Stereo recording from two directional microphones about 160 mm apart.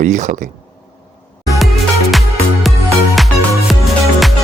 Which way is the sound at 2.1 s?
Centre (ahead or behind).